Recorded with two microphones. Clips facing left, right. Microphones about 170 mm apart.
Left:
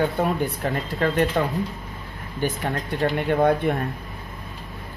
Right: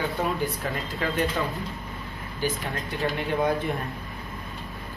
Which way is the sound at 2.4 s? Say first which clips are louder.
Left 4 dB; 55° left (ahead or behind).